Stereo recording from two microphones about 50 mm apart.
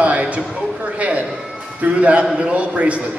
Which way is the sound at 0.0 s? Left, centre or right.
Right.